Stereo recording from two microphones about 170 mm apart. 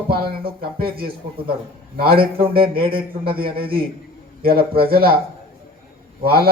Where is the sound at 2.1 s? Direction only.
30° right (ahead or behind).